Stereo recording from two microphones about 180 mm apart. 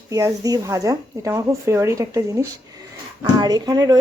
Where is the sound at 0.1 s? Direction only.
20° right (ahead or behind).